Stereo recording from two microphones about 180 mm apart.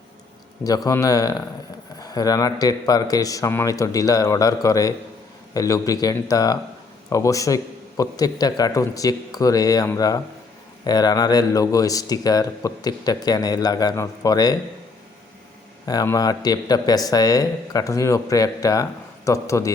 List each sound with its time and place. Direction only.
0.6 s speech: 20° left (ahead or behind)
15.9 s speech: 20° left (ahead or behind)